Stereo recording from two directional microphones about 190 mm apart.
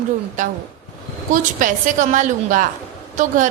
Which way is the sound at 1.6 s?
45° right (ahead or behind).